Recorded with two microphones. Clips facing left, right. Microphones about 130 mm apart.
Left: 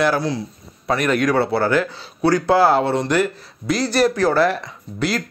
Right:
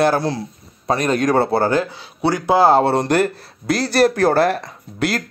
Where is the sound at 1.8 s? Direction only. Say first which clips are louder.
Left 1 dB; 25° right (ahead or behind).